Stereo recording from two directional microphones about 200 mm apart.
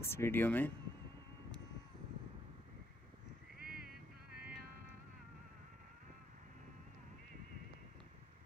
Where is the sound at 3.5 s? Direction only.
50° right (ahead or behind).